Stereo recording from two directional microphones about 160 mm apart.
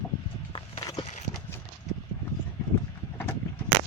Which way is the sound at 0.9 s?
45° left (ahead or behind).